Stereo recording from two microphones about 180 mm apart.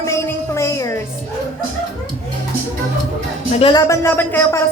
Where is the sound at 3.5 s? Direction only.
30° left (ahead or behind).